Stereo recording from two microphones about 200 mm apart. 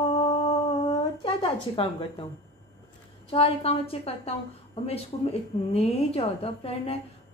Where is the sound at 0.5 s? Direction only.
25° left (ahead or behind).